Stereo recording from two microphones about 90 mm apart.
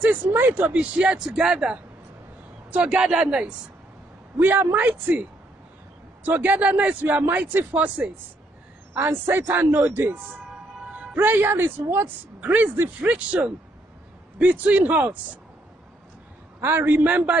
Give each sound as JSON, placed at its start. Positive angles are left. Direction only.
{"t": 0.0, "sound": "speech", "side_deg": -20}
{"t": 4.4, "sound": "speech", "side_deg": -20}
{"t": 13.0, "sound": "speech", "side_deg": -15}
{"t": 16.6, "sound": "speech", "side_deg": -25}